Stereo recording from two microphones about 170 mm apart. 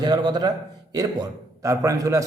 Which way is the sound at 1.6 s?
20° right (ahead or behind).